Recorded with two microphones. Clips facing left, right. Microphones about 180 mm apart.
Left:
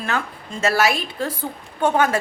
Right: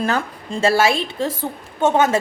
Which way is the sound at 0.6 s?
25° right (ahead or behind).